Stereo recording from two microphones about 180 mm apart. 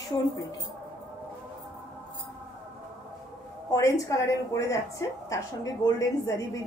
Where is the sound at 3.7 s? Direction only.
15° left (ahead or behind).